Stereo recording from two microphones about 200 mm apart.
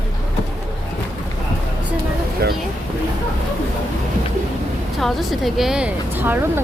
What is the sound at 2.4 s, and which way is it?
Speech, 55° right (ahead or behind).